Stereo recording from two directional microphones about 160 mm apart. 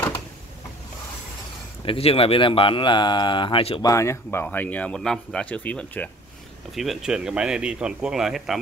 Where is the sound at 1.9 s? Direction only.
35° left (ahead or behind).